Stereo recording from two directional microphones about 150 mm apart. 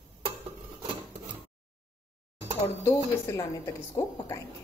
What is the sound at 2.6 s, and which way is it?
A woman's voice, 15° left (ahead or behind).